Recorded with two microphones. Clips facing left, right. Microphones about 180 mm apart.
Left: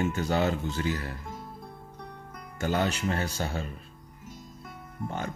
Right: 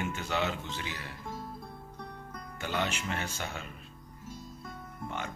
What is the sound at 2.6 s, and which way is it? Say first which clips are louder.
Speech: left 6 dB; 40° left (ahead or behind).